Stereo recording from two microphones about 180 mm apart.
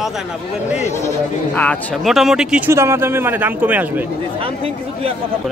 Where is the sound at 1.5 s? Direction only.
5° left (ahead or behind).